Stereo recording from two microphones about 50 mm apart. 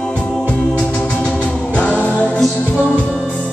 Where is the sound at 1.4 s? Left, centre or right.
Left.